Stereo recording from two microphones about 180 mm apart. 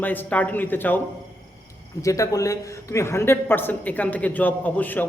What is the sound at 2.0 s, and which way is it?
A man's voice, 20° left (ahead or behind).